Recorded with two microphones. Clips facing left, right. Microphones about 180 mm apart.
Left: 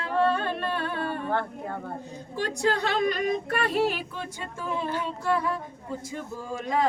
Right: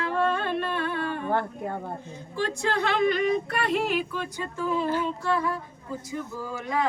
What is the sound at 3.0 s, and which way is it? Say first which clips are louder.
Singing: right 2 dB; 40° left (ahead or behind).